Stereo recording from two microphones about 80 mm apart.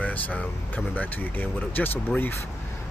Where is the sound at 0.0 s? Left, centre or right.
Centre.